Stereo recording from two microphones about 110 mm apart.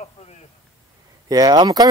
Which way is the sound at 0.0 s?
70° left (ahead or behind).